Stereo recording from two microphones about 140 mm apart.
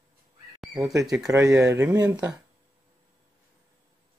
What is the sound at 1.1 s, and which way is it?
Speech, 5° right (ahead or behind).